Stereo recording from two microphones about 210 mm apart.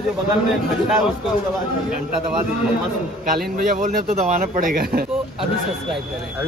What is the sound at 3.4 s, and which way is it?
Speech, 40° right (ahead or behind).